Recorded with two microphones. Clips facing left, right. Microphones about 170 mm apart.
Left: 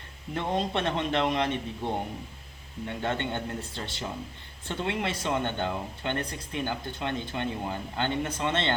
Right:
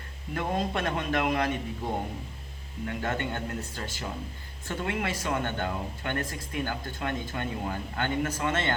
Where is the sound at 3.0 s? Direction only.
25° left (ahead or behind).